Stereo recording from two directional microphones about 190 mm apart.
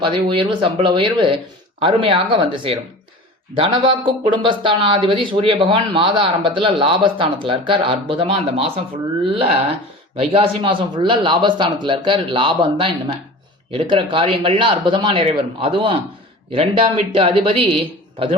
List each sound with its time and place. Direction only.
0.0 s speech: 25° right (ahead or behind)